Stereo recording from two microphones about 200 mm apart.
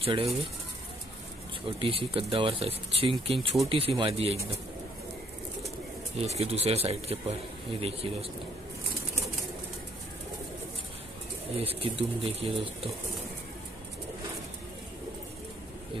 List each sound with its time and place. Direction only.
0.0 s speech: 30° right (ahead or behind)
1.8 s speech: 30° right (ahead or behind)
6.1 s speech: 30° right (ahead or behind)
11.5 s speech: 30° right (ahead or behind)